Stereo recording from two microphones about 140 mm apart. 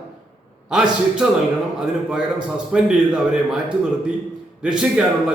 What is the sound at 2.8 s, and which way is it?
Speech, 5° right (ahead or behind).